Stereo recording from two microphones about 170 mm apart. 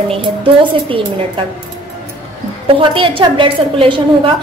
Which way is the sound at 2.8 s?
30° right (ahead or behind).